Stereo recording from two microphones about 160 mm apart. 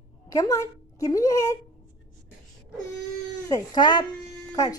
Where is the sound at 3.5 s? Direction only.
25° left (ahead or behind).